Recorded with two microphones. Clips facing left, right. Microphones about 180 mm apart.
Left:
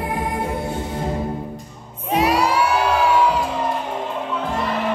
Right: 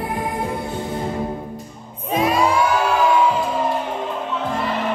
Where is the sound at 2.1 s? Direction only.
75° left (ahead or behind).